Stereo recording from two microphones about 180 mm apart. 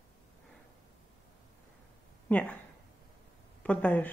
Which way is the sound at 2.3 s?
10° left (ahead or behind).